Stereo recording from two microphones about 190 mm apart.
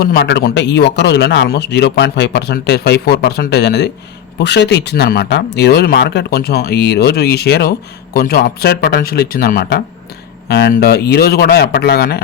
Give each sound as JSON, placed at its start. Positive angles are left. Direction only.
{"t": 0.0, "sound": "speech", "side_deg": 60}